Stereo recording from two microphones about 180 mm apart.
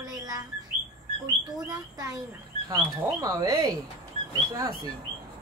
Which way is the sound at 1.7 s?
20° right (ahead or behind).